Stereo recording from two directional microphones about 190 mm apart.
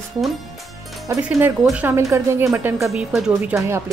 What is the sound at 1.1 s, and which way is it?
Speech, 10° right (ahead or behind).